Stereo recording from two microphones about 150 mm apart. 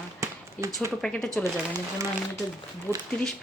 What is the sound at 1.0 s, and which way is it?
Speech, 5° left (ahead or behind).